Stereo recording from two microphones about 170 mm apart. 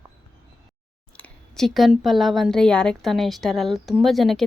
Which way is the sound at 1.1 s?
10° left (ahead or behind).